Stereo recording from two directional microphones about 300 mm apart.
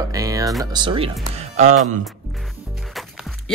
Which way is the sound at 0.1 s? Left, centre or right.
Centre.